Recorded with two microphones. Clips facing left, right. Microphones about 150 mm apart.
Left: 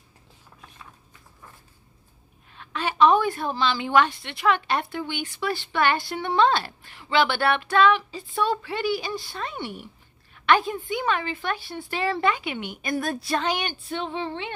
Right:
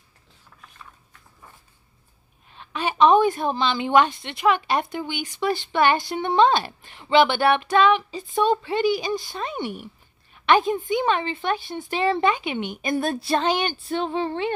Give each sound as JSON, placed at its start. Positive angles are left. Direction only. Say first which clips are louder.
{"t": 2.5, "sound": "a woman's voice", "louder": "right 2 dB", "side_deg": -20}